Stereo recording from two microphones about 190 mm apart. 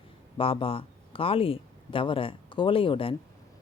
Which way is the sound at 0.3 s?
30° left (ahead or behind).